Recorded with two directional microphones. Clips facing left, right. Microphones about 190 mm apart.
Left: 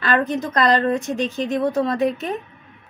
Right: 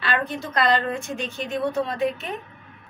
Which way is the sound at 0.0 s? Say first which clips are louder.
Left 6 dB; 45° left (ahead or behind).